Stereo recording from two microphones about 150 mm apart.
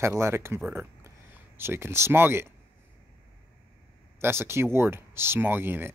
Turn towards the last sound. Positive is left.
turn(degrees=-15)  # may be behind; listen again after turning